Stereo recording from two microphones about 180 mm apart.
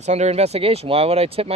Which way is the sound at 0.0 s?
40° right (ahead or behind).